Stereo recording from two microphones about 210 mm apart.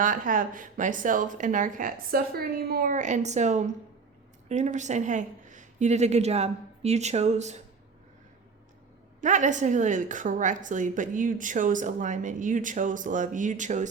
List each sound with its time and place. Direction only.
0.0 s a woman's voice: 40° right (ahead or behind)
9.2 s a woman's voice: 35° right (ahead or behind)